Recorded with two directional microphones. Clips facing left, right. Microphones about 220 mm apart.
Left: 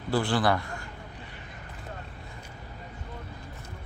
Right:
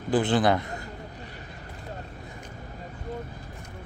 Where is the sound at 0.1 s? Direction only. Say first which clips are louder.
Right 3 dB; 20° right (ahead or behind).